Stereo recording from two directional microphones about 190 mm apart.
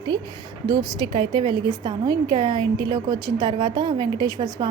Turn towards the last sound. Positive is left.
turn(degrees=-20)  # may be behind; listen again after turning